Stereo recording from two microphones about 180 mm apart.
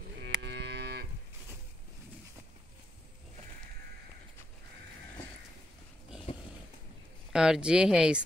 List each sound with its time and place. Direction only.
0.2 s moo: 70° right (ahead or behind)
7.3 s speech: 5° right (ahead or behind)